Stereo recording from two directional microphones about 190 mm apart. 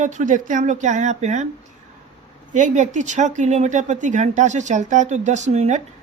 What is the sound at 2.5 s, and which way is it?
Speech, 40° right (ahead or behind).